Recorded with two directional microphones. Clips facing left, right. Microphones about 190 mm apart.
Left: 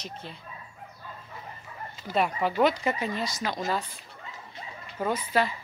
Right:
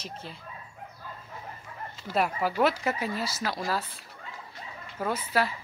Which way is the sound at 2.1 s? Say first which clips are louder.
Left 1 dB; centre (ahead or behind).